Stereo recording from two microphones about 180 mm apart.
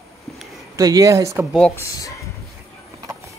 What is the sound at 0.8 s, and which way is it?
Speech, 20° right (ahead or behind).